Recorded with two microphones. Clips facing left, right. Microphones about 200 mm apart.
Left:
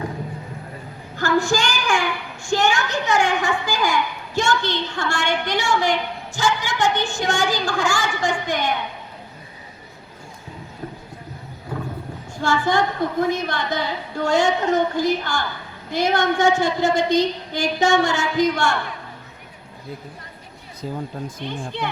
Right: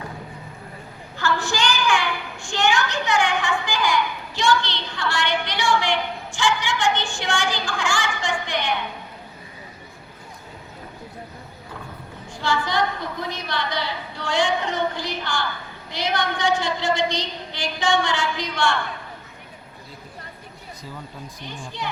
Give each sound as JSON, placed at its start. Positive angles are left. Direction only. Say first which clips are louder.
{"t": 1.1, "sound": "a child's voice", "louder": "left 5 dB", "side_deg": 45}
{"t": 12.4, "sound": "a child's voice", "louder": "left 3 dB", "side_deg": 50}
{"t": 21.4, "sound": "speech", "louder": "left 5 dB", "side_deg": 60}